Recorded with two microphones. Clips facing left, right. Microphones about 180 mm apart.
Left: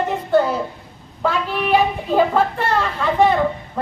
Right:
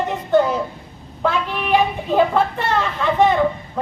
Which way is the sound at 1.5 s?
5° left (ahead or behind).